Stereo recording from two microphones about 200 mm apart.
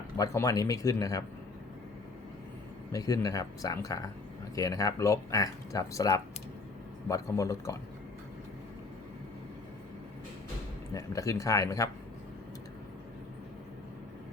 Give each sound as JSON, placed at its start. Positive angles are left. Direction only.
{"t": 0.2, "sound": "speech", "side_deg": 15}
{"t": 2.9, "sound": "speech", "side_deg": 15}
{"t": 10.9, "sound": "speech", "side_deg": 15}